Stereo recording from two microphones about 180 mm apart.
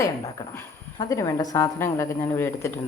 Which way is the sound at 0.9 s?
20° left (ahead or behind).